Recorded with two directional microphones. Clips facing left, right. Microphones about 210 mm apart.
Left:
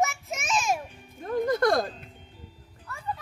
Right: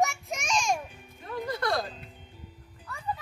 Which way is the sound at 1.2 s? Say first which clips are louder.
Left 8 dB; 45° left (ahead or behind).